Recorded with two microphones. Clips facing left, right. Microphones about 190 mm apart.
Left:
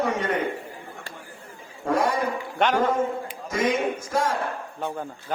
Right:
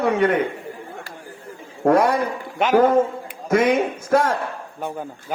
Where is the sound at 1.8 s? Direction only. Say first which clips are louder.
Right 7 dB; 60° right (ahead or behind).